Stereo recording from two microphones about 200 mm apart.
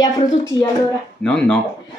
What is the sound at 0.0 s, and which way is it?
Speech, 15° left (ahead or behind).